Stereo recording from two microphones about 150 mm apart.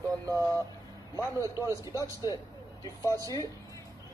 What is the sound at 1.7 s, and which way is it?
Speech, 20° right (ahead or behind).